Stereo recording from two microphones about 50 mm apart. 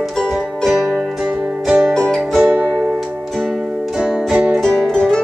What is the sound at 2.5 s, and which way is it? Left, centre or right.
Music, right.